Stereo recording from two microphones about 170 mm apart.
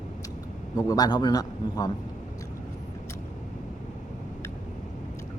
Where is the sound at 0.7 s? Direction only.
20° left (ahead or behind).